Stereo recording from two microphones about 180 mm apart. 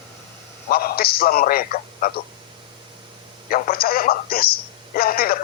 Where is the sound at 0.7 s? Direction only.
55° left (ahead or behind).